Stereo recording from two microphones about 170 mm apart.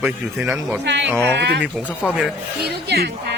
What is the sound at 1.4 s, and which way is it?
Speech, 90° right.